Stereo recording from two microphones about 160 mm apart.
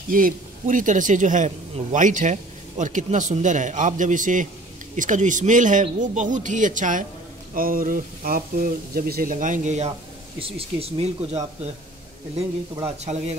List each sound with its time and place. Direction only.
0.1 s speech: 55° right (ahead or behind)
10.4 s speech: 35° right (ahead or behind)
12.8 s speech: 45° right (ahead or behind)